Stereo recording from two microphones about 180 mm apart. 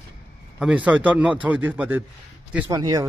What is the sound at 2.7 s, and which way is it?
Speech, 20° right (ahead or behind).